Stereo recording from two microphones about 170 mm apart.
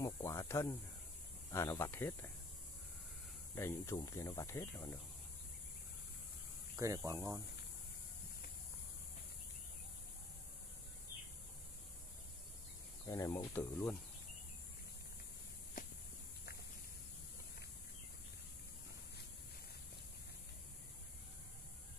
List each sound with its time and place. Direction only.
0.0 s speech: 15° left (ahead or behind)
3.5 s speech: 15° left (ahead or behind)
6.8 s speech: 20° right (ahead or behind)
13.0 s speech: 20° left (ahead or behind)